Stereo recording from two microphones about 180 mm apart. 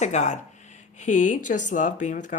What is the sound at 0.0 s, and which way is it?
Speech, 40° left (ahead or behind).